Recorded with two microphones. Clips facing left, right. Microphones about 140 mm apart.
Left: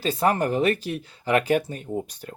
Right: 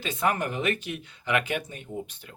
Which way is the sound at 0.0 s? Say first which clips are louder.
Left 5 dB; 35° left (ahead or behind).